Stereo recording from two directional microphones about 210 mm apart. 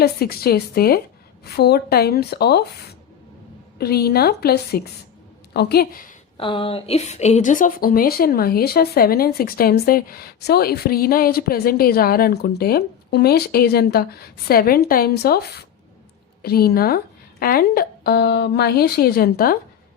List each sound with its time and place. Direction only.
0.0 s a woman's voice: 45° left (ahead or behind)
3.8 s a woman's voice: 50° left (ahead or behind)
6.3 s a woman's voice: 25° left (ahead or behind); by 19.5 s 45° left (ahead or behind)